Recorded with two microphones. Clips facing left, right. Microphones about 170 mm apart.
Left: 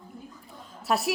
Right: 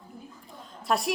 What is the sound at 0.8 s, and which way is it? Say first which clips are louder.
Speech: even; 5° left (ahead or behind).